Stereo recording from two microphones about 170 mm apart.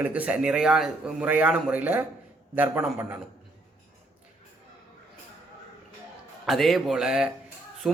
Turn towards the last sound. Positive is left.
turn(degrees=0)  # may be behind; listen again after turning